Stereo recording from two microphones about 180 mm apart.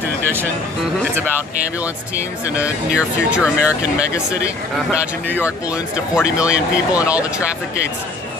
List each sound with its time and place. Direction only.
1.1 s speech: 10° right (ahead or behind)
2.4 s speech: 10° right (ahead or behind)
3.4 s speech: 15° left (ahead or behind)
6.1 s speech: 5° right (ahead or behind)